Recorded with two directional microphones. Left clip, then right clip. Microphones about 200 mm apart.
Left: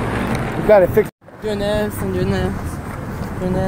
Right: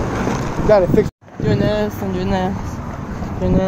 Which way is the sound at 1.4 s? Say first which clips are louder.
Right 1 dB; 45° right (ahead or behind).